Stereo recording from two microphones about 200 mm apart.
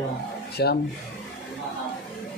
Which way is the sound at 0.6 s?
55° left (ahead or behind).